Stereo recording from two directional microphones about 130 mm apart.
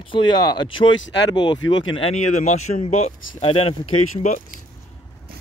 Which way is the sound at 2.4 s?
60° left (ahead or behind).